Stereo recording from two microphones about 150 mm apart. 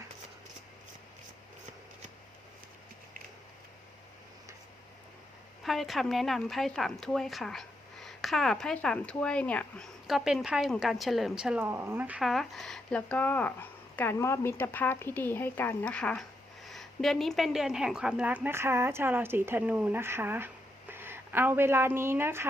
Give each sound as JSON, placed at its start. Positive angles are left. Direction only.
{"t": 5.6, "sound": "a woman's voice", "side_deg": 0}